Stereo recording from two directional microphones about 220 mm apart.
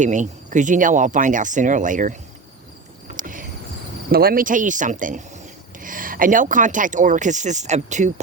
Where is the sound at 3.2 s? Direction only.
35° right (ahead or behind).